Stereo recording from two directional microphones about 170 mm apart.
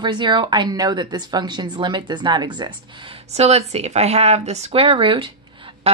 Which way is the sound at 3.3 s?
40° right (ahead or behind).